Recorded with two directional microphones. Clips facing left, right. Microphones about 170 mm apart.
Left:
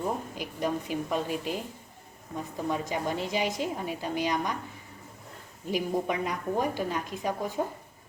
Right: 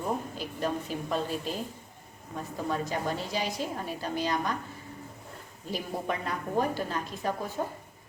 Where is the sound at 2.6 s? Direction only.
15° left (ahead or behind).